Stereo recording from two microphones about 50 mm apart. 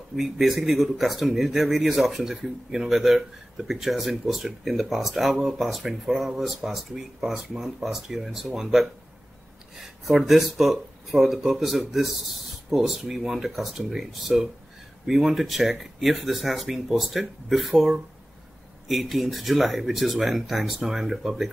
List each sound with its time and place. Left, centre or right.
0.1 s speech: centre
10.0 s speech: centre